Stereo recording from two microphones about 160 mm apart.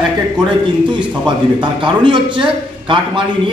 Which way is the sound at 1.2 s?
30° right (ahead or behind).